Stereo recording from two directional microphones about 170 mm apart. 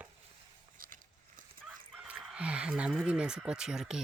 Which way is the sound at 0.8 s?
55° right (ahead or behind).